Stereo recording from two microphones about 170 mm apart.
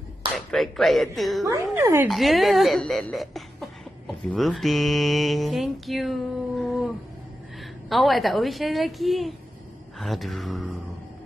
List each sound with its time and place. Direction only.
0.4 s speech: centre (ahead or behind)
1.4 s a woman's voice: 15° right (ahead or behind)
2.0 s speech: centre (ahead or behind)
7.9 s speech: centre (ahead or behind)